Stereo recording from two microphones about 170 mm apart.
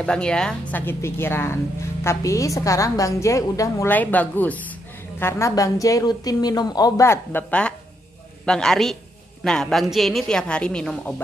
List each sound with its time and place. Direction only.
0.0 s a woman's voice: 5° left (ahead or behind)